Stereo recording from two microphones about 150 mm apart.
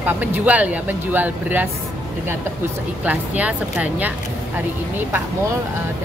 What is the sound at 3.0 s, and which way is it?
Speech, 10° right (ahead or behind).